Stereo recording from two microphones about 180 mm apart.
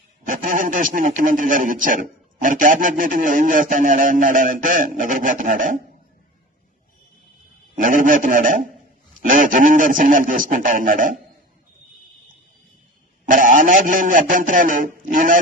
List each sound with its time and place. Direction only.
0.3 s a man's voice: 45° right (ahead or behind)
7.8 s a man's voice: 45° right (ahead or behind)
13.2 s a man's voice: 45° right (ahead or behind)